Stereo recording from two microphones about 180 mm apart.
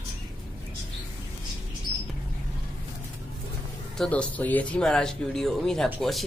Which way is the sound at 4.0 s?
5° left (ahead or behind).